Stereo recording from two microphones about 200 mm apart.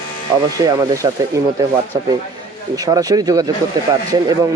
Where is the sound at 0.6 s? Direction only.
15° right (ahead or behind).